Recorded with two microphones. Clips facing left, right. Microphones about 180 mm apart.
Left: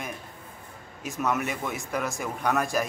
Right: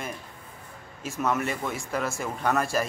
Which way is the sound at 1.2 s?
Centre (ahead or behind).